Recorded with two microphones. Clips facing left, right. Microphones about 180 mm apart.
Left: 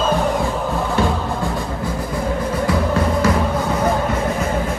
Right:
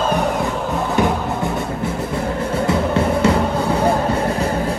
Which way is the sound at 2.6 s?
25° right (ahead or behind).